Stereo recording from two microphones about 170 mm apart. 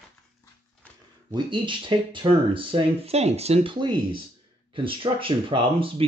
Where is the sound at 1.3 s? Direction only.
30° right (ahead or behind).